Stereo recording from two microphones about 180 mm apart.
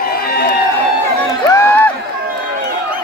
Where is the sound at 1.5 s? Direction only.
10° left (ahead or behind).